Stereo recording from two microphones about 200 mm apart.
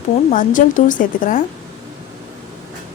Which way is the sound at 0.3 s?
40° left (ahead or behind).